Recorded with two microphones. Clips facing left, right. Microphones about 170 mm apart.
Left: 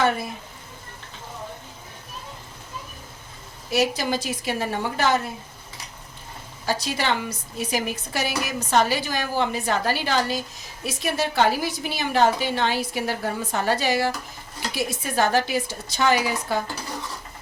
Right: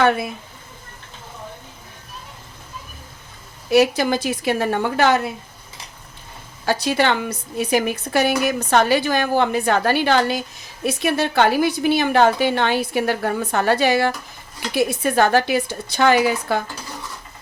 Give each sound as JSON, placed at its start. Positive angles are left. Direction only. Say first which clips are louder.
{"t": 3.7, "sound": "a woman's voice", "louder": "right 7 dB", "side_deg": -60}
{"t": 6.7, "sound": "a woman's voice", "louder": "right 6 dB", "side_deg": -60}